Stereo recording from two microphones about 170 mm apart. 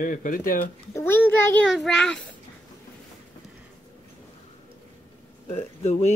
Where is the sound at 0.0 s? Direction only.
55° left (ahead or behind).